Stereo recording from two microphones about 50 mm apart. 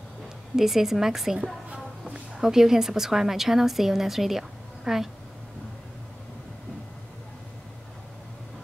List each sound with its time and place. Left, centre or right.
0.6 s a woman's voice: centre
2.4 s a woman's voice: centre